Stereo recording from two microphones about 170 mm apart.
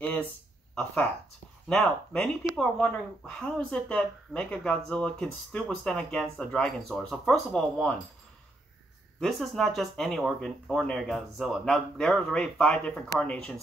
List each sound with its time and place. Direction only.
0.7 s speech: 5° left (ahead or behind)
9.2 s speech: centre (ahead or behind)